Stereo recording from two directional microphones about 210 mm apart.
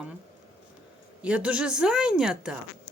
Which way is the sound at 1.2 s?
5° right (ahead or behind).